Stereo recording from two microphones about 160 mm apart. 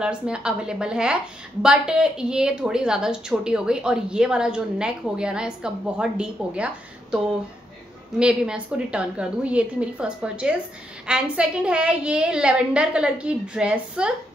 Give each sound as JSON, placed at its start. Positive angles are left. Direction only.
{"t": 0.0, "sound": "a woman's voice", "side_deg": -5}
{"t": 8.2, "sound": "a woman's voice", "side_deg": -5}